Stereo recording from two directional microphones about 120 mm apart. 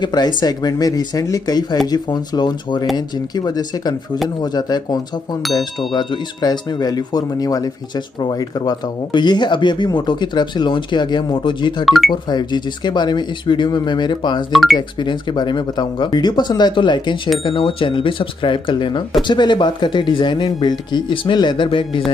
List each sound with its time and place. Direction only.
0.0 s speech: 35° left (ahead or behind)
11.8 s speech: centre (ahead or behind)
12.3 s speech: 35° left (ahead or behind)
14.5 s speech: centre (ahead or behind)
14.8 s speech: 40° left (ahead or behind)